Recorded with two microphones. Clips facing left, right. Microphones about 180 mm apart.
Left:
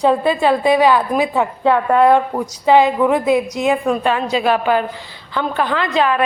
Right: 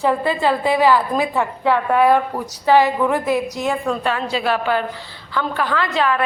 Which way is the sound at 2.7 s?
20° left (ahead or behind).